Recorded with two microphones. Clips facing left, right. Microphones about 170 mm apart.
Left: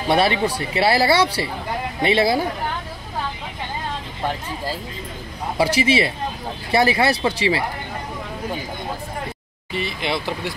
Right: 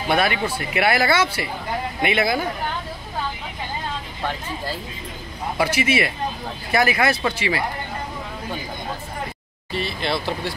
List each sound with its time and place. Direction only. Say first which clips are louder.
0.1 s speech: left 3 dB; 30° left (ahead or behind)
5.6 s speech: left 3 dB; 30° left (ahead or behind)
9.7 s speech: even; 15° left (ahead or behind)